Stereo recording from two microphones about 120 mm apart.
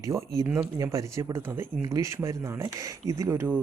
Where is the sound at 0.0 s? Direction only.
25° right (ahead or behind).